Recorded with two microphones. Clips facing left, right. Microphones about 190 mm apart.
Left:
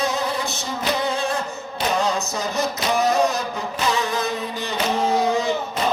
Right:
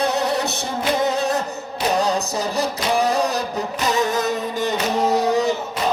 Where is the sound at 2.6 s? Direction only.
35° right (ahead or behind).